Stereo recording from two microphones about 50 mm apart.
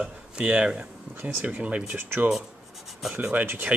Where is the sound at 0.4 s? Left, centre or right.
Centre.